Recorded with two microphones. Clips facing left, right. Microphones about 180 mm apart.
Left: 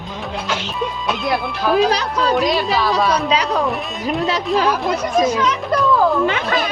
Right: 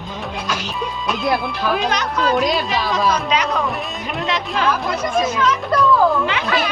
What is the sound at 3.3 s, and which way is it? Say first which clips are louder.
Speech: left 2 dB; 35° left (ahead or behind).